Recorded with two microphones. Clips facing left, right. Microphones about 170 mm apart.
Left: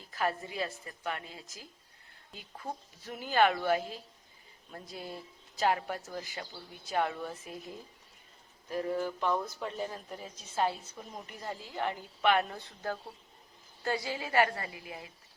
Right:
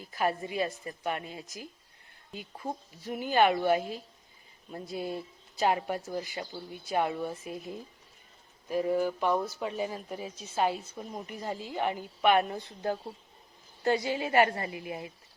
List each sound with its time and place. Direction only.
0.0 s speech: 15° right (ahead or behind)
8.6 s a woman's voice: 15° right (ahead or behind)